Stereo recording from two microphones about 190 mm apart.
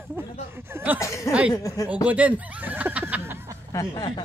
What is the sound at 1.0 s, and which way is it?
Chuckle, 15° left (ahead or behind).